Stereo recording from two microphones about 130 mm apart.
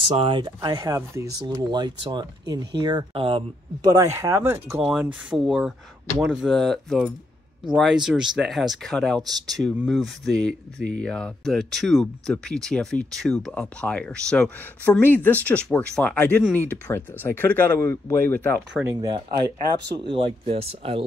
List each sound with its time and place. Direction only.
0.1 s speech: 45° right (ahead or behind); by 4.6 s 20° right (ahead or behind)
4.9 s speech: 5° right (ahead or behind); by 18.6 s 15° left (ahead or behind)
18.7 s speech: 15° right (ahead or behind)
18.9 s speech: 35° right (ahead or behind)
20.1 s speech: 40° right (ahead or behind)